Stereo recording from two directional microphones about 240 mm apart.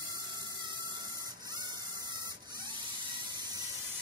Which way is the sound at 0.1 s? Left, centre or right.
Centre.